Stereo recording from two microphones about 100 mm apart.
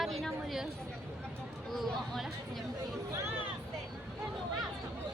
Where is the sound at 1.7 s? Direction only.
Centre (ahead or behind).